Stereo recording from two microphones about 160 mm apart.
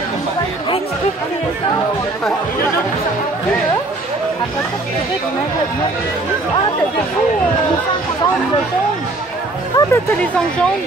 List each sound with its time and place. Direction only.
9.8 s speech: 20° left (ahead or behind)